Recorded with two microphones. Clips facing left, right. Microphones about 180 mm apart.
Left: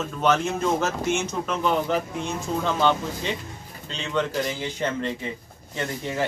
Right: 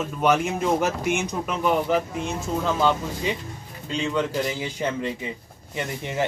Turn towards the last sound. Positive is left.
turn(degrees=-15)  # may be behind; listen again after turning